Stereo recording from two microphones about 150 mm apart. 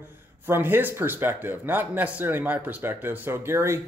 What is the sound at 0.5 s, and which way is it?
A man's voice, 15° right (ahead or behind).